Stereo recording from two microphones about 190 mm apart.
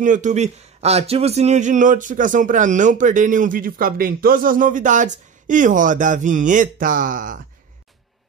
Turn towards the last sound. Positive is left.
turn(degrees=-45)  # may be behind; listen again after turning